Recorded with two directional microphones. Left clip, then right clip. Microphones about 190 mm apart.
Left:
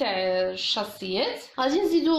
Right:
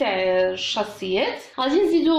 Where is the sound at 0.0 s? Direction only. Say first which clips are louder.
Right 5 dB; 25° left (ahead or behind).